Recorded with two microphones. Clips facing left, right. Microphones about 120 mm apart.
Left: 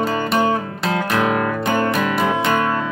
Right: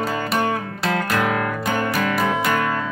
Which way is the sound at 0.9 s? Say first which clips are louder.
Left 3 dB; 25° left (ahead or behind).